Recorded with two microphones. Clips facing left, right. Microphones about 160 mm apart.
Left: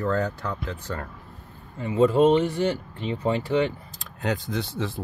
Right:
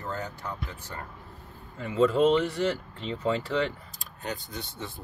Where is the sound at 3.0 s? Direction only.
15° left (ahead or behind).